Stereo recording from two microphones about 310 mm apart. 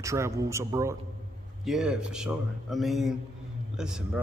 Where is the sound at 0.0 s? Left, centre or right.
Centre.